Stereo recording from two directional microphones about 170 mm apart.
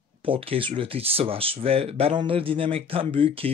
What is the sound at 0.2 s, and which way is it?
Speech, 35° right (ahead or behind).